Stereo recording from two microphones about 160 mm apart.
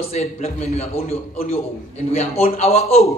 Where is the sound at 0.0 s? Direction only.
40° left (ahead or behind).